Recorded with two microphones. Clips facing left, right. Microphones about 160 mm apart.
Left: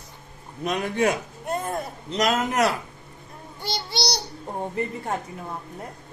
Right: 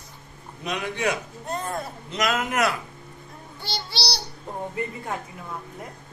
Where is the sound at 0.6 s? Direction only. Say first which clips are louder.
Left 4 dB; 45° left (ahead or behind).